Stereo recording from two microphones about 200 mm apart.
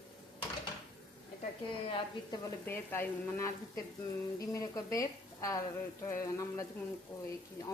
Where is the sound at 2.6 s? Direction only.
10° left (ahead or behind).